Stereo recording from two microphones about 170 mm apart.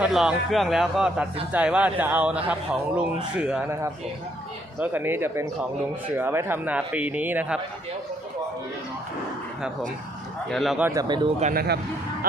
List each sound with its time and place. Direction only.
0.0 s speech: 5° right (ahead or behind)
10.5 s speech: centre (ahead or behind)
10.8 s speech: 20° right (ahead or behind)
11.5 s speech: 70° right (ahead or behind)